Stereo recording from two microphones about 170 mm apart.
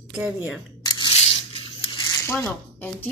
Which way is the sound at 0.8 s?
25° left (ahead or behind).